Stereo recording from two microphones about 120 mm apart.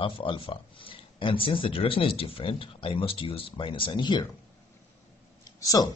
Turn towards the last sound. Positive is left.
turn(degrees=30)  # may be behind; listen again after turning